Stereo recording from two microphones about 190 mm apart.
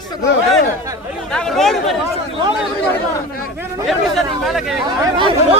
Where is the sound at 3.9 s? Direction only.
Centre (ahead or behind).